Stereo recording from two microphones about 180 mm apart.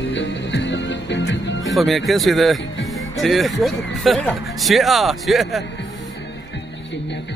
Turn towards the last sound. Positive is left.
turn(degrees=0)  # may be behind; listen again after turning